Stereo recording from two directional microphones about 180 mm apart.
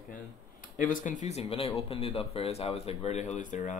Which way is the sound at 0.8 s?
45° left (ahead or behind).